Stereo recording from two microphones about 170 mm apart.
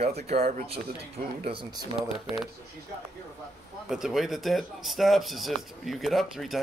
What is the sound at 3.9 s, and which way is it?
Speech, centre (ahead or behind).